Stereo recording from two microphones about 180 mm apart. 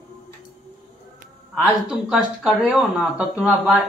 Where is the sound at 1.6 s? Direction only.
5° right (ahead or behind).